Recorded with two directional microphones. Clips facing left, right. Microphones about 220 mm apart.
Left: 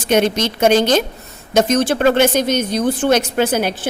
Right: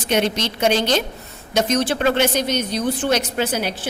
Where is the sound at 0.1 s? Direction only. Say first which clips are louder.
Left 5 dB; 45° left (ahead or behind).